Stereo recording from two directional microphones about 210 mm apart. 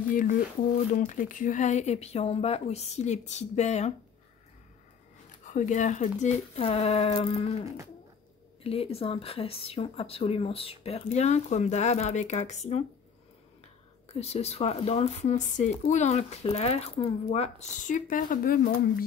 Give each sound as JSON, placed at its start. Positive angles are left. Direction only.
{"t": 0.1, "sound": "speech", "side_deg": 40}
{"t": 5.4, "sound": "speech", "side_deg": 35}
{"t": 7.6, "sound": "a sound", "side_deg": -15}
{"t": 8.6, "sound": "speech", "side_deg": 30}
{"t": 14.0, "sound": "speech", "side_deg": 30}